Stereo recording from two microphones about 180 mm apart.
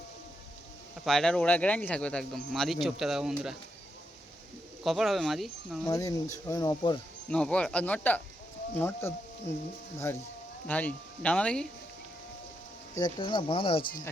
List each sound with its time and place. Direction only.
1.0 s speech: centre (ahead or behind)
4.8 s speech: centre (ahead or behind)
5.8 s speech: 20° left (ahead or behind)
7.3 s speech: 5° left (ahead or behind)
13.0 s speech: 25° left (ahead or behind)